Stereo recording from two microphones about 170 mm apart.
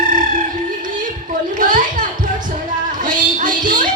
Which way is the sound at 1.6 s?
50° right (ahead or behind).